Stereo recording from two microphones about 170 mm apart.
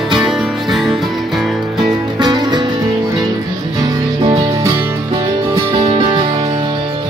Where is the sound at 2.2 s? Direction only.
25° right (ahead or behind).